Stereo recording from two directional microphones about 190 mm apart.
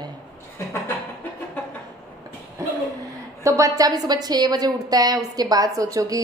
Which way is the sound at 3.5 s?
15° right (ahead or behind).